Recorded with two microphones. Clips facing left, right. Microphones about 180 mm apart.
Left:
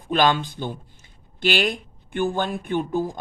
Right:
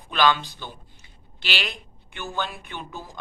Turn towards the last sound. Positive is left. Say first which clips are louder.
# left 14 dB
turn(degrees=50)  # may be behind; listen again after turning